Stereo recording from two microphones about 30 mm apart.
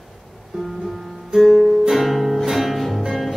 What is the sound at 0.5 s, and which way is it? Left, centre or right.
Music, centre.